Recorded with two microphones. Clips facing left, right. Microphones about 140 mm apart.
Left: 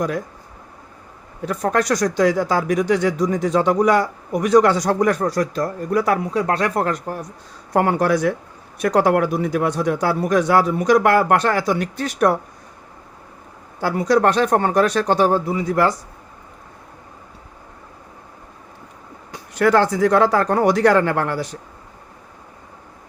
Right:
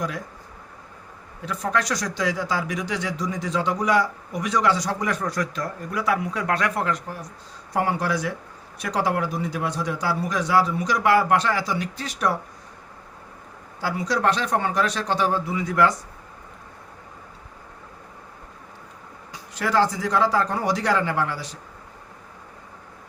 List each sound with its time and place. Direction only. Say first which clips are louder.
1.5 s speech: left 6 dB; 50° left (ahead or behind)
5.2 s speech: left 7 dB; 35° left (ahead or behind)
6.3 s speech: left 5 dB; 30° left (ahead or behind)
7.7 s speech: left 7 dB; 55° left (ahead or behind)
13.8 s speech: left 7 dB; 50° left (ahead or behind); by 16.0 s 35° left (ahead or behind)
19.3 s speech: left 8 dB; 55° left (ahead or behind)